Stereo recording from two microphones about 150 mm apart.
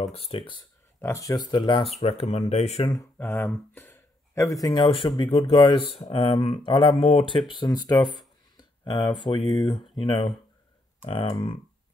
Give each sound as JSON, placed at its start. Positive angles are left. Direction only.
{"t": 0.1, "sound": "speech", "side_deg": 40}
{"t": 1.0, "sound": "speech", "side_deg": 20}
{"t": 3.2, "sound": "speech", "side_deg": 10}
{"t": 8.0, "sound": "speech", "side_deg": 0}
{"t": 8.5, "sound": "speech", "side_deg": 30}
{"t": 9.4, "sound": "speech", "side_deg": 0}
{"t": 9.9, "sound": "speech", "side_deg": 35}